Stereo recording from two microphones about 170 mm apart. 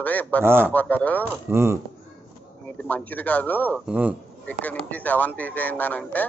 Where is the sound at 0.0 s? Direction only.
10° left (ahead or behind).